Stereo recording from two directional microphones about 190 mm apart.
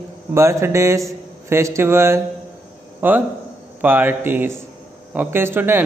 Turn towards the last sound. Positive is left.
turn(degrees=-10)  # may be behind; listen again after turning